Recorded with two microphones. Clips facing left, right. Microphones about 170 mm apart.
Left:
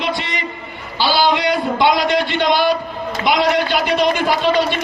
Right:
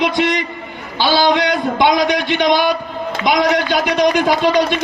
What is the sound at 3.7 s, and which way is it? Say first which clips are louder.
Speech: right 2 dB; 15° right (ahead or behind).